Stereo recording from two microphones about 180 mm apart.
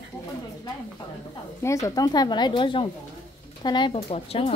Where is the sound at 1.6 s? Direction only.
15° left (ahead or behind); by 4.6 s 35° left (ahead or behind).